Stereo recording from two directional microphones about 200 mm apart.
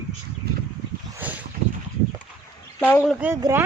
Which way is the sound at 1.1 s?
10° right (ahead or behind).